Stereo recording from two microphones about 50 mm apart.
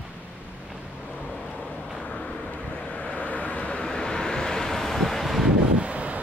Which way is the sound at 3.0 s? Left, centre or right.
Left.